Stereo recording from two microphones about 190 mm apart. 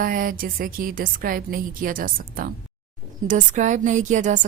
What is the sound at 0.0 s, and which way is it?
A woman's voice, 50° right (ahead or behind).